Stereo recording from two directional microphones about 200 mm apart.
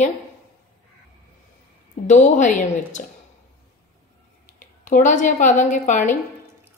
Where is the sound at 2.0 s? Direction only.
35° left (ahead or behind).